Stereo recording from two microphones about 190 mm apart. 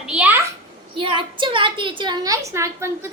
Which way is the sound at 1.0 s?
25° right (ahead or behind).